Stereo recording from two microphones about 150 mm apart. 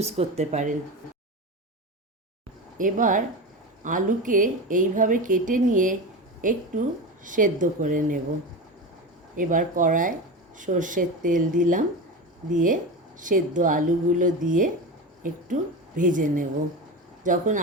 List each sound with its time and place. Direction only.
0.0 s speech: 45° right (ahead or behind)
2.7 s a woman's voice: 60° right (ahead or behind)
9.3 s a woman's voice: 60° right (ahead or behind)
16.0 s a woman's voice: 60° right (ahead or behind)